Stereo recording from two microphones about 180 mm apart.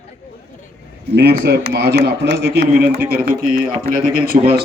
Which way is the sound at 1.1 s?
65° right (ahead or behind).